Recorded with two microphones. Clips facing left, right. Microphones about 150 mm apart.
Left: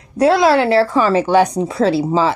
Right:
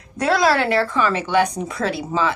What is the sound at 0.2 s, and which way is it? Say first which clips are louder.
A woman's voice: left 6 dB; 25° left (ahead or behind).